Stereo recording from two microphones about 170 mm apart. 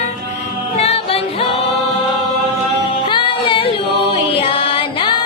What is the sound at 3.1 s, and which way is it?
Music, 30° left (ahead or behind).